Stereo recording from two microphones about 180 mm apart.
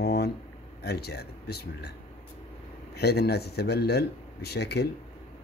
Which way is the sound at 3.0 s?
65° left (ahead or behind).